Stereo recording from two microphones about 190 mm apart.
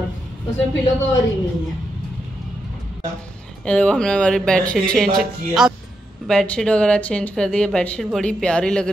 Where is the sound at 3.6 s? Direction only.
5° left (ahead or behind).